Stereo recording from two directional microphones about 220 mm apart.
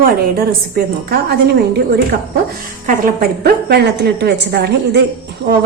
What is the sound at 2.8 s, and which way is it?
A woman's voice, 40° right (ahead or behind).